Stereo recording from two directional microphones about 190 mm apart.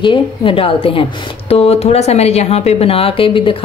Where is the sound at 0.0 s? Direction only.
25° left (ahead or behind).